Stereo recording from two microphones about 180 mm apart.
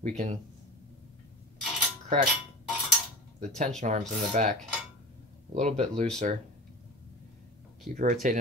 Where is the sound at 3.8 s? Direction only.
40° right (ahead or behind).